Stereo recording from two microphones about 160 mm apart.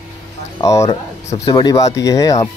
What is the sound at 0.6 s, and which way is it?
Speech, 20° left (ahead or behind).